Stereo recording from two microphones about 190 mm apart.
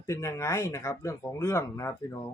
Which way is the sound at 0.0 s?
15° left (ahead or behind).